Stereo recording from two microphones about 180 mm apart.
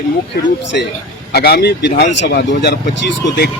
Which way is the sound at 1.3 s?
60° left (ahead or behind).